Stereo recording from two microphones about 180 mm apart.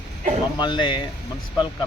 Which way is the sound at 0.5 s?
25° left (ahead or behind).